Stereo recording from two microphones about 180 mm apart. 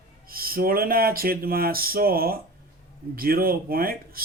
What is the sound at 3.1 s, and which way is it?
Speech, 55° right (ahead or behind).